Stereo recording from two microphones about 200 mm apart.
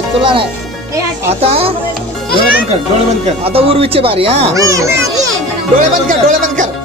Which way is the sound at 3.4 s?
30° right (ahead or behind).